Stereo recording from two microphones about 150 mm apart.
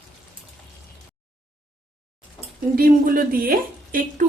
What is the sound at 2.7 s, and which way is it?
A woman's voice, 70° right (ahead or behind).